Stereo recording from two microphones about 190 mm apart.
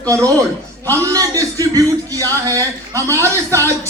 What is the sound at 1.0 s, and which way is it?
A man's voice, 20° right (ahead or behind).